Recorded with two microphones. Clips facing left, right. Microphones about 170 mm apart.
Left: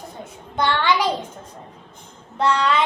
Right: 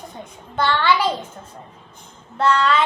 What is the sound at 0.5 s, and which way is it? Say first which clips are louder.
Speech: right 1 dB; 15° left (ahead or behind).